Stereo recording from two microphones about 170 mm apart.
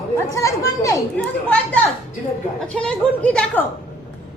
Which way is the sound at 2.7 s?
5° left (ahead or behind).